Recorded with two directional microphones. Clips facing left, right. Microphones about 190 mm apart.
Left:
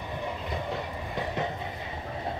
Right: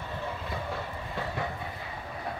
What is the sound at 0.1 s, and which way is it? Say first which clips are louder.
Vehicle: left 2 dB; 15° left (ahead or behind).